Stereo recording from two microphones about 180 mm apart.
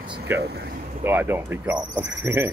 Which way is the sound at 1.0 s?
10° right (ahead or behind).